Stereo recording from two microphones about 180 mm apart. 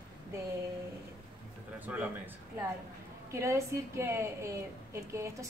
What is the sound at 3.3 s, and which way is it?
A woman's voice, 15° right (ahead or behind).